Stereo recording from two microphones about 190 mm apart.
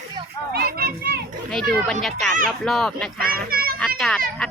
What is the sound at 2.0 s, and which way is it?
Speech, centre (ahead or behind).